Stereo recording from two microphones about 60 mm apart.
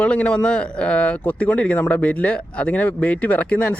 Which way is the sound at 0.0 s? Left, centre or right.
Left.